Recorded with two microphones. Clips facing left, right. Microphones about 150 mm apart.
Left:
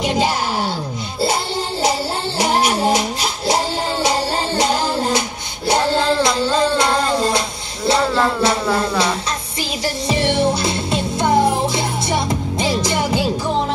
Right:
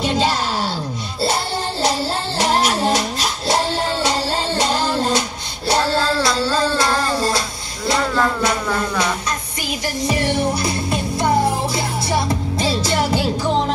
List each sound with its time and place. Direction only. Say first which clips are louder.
0.0 s a sound: left 1 dB; 10° left (ahead or behind)
1.2 s music: left 1 dB; 10° left (ahead or behind)
5.7 s child singing: left 2 dB; 15° left (ahead or behind)
8.7 s music: left 2 dB; 30° left (ahead or behind)